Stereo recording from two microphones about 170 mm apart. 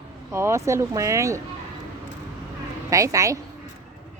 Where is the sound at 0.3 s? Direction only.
15° right (ahead or behind).